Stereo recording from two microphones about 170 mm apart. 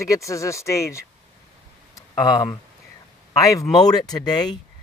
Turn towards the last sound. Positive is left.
turn(degrees=25)  # may be behind; listen again after turning